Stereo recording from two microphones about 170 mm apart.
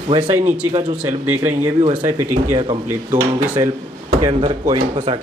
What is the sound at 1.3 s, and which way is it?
Speech, 15° right (ahead or behind).